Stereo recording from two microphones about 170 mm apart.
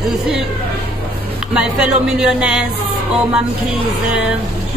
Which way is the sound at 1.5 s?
5° right (ahead or behind).